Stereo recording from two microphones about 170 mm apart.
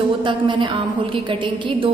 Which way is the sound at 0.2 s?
30° right (ahead or behind).